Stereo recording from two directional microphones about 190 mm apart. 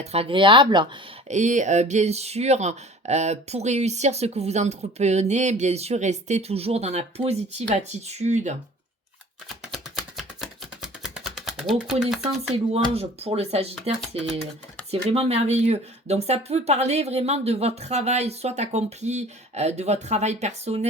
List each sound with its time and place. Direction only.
0.0 s speech: 30° right (ahead or behind)
1.3 s speech: 40° right (ahead or behind)
9.7 s chopping: centre (ahead or behind)
11.2 s a sound: centre (ahead or behind)
12.7 s speech: 30° right (ahead or behind)